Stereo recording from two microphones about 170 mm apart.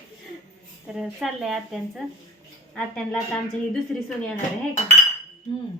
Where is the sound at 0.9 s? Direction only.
5° right (ahead or behind).